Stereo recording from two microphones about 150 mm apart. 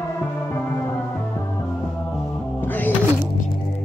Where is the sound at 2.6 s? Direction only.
15° left (ahead or behind).